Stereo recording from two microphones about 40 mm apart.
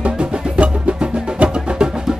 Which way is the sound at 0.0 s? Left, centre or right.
Right.